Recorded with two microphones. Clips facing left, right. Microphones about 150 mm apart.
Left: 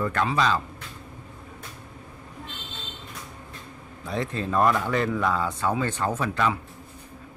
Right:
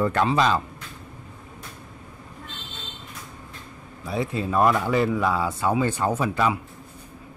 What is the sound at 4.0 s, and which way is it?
Speech, 5° right (ahead or behind).